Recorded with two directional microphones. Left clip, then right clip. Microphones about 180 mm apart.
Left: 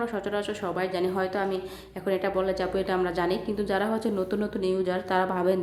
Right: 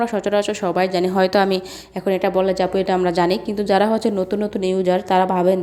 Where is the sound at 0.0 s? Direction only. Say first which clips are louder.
Right 10 dB; 30° right (ahead or behind).